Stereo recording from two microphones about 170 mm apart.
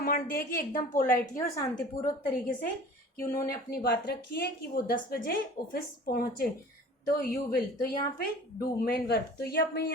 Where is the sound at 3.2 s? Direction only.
15° left (ahead or behind).